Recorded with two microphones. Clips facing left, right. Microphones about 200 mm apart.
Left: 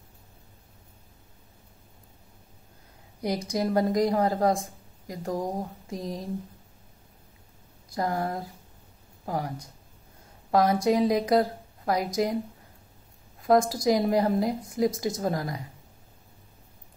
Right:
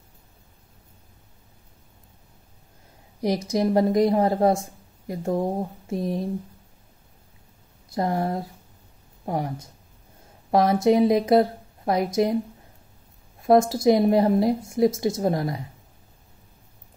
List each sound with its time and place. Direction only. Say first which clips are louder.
3.5 s a woman's voice: right 4 dB; 25° right (ahead or behind)
7.9 s a woman's voice: right 4 dB; 25° right (ahead or behind)
13.4 s a woman's voice: right 4 dB; 25° right (ahead or behind)